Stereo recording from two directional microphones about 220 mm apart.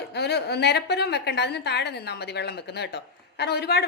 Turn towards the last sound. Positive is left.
turn(degrees=50)  # may be behind; listen again after turning